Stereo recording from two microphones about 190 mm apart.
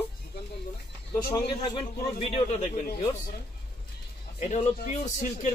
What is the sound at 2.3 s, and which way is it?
Speech, 35° left (ahead or behind).